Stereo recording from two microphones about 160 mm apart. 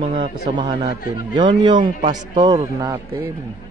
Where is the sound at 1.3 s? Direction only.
30° right (ahead or behind).